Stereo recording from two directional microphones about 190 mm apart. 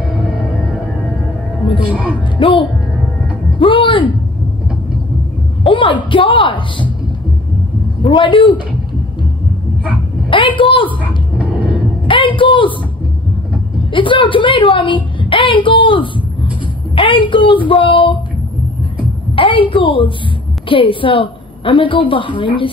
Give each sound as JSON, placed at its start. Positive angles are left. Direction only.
{"t": 2.3, "sound": "a woman's voice", "side_deg": 25}
{"t": 3.5, "sound": "a sound", "side_deg": 25}
{"t": 5.6, "sound": "a man's voice", "side_deg": 25}
{"t": 8.0, "sound": "a man's voice", "side_deg": 25}
{"t": 10.6, "sound": "a woman's voice", "side_deg": 25}
{"t": 12.1, "sound": "a man's voice", "side_deg": 25}
{"t": 13.9, "sound": "a woman's voice", "side_deg": 25}
{"t": 19.3, "sound": "a woman's voice", "side_deg": 25}